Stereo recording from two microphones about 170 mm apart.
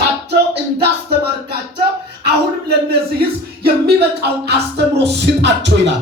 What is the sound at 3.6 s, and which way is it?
Speech, 75° right (ahead or behind).